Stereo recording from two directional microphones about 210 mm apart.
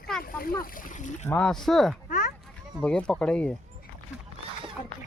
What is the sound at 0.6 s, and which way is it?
Speech, 40° left (ahead or behind).